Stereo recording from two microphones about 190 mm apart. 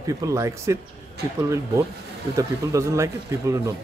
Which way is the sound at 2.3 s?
15° right (ahead or behind).